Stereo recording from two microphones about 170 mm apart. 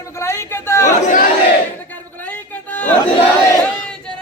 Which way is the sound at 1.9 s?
10° left (ahead or behind).